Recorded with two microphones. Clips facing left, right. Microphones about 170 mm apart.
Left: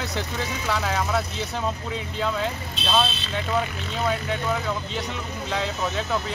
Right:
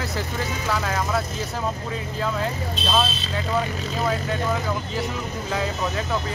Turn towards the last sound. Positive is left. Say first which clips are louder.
# even
turn(degrees=0)  # may be behind; listen again after turning